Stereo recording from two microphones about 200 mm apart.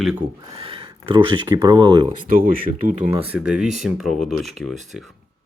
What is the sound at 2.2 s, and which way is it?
Speech, 45° right (ahead or behind).